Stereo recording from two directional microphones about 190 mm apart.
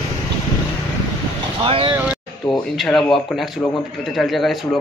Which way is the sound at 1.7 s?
30° right (ahead or behind).